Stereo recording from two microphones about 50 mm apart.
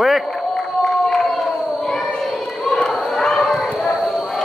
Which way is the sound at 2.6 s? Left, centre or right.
Centre.